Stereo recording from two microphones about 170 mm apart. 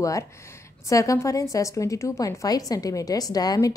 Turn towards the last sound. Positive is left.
turn(degrees=20)  # may be behind; listen again after turning